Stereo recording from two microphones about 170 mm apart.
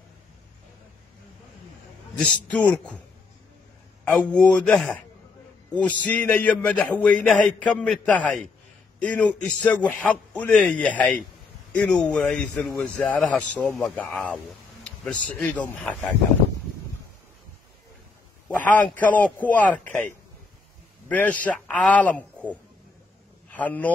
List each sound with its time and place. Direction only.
2.1 s a man's voice: 5° left (ahead or behind)
4.0 s a man's voice: 5° left (ahead or behind)
6.0 s a man's voice: 10° left (ahead or behind)
18.5 s a man's voice: 5° left (ahead or behind)
21.1 s a man's voice: 10° left (ahead or behind)
23.5 s a man's voice: 10° left (ahead or behind)